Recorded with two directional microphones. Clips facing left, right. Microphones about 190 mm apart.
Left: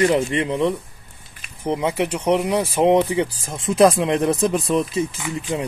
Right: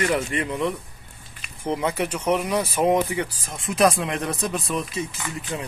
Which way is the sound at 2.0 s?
30° left (ahead or behind).